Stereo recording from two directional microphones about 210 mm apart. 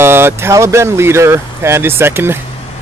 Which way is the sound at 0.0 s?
10° right (ahead or behind).